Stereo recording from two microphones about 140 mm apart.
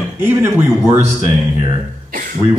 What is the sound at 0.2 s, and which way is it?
Speech, 20° right (ahead or behind).